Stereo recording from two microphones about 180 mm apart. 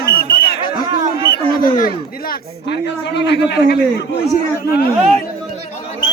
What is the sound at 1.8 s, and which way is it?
A man's voice, 55° left (ahead or behind).